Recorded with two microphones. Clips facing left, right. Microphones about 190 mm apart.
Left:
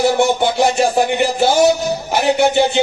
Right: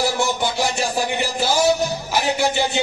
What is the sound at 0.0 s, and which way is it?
Speech, 60° left (ahead or behind).